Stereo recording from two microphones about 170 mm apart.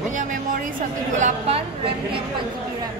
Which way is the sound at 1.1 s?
45° right (ahead or behind).